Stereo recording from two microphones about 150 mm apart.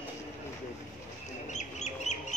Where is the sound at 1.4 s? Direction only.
50° left (ahead or behind).